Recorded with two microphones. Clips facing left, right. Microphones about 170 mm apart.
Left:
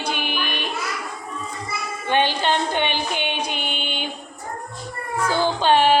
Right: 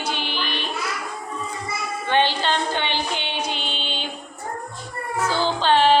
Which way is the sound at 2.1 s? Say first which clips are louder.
Left 1 dB; 15° left (ahead or behind).